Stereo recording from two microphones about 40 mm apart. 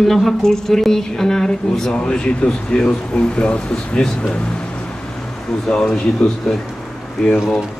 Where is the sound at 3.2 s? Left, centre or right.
Left.